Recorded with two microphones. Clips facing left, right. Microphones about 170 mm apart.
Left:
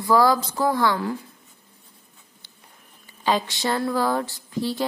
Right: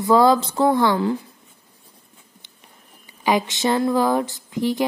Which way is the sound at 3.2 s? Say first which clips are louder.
Right 3 dB; 15° right (ahead or behind).